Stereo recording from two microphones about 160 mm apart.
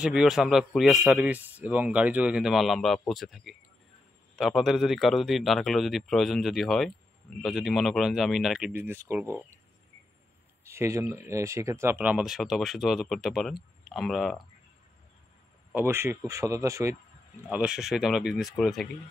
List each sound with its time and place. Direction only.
0.0 s a man's voice: 5° right (ahead or behind)
8.7 s speech: 15° right (ahead or behind)
10.6 s a man's voice: 15° right (ahead or behind); by 14.4 s centre (ahead or behind)
15.7 s speech: 15° right (ahead or behind)
17.5 s a man's voice: 5° right (ahead or behind)